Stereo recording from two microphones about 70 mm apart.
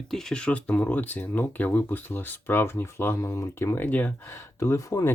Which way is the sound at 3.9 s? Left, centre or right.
Left.